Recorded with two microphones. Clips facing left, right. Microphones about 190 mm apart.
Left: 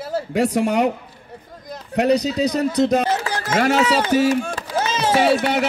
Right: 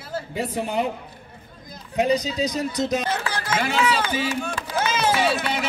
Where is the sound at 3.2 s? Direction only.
45° left (ahead or behind).